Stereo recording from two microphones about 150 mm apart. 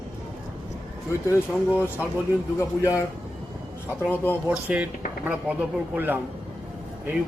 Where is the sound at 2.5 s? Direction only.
20° left (ahead or behind).